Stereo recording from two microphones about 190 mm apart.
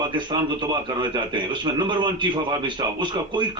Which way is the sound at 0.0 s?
25° right (ahead or behind).